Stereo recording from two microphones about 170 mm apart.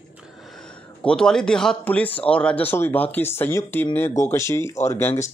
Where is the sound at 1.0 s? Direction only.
5° left (ahead or behind).